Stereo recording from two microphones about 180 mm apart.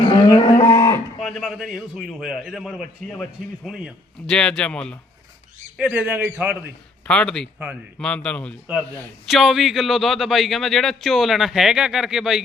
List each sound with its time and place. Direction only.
0.1 s livestock: 25° left (ahead or behind)
1.2 s a man's voice: centre (ahead or behind)
5.7 s a man's voice: 5° right (ahead or behind)
7.1 s a man's voice: 5° left (ahead or behind)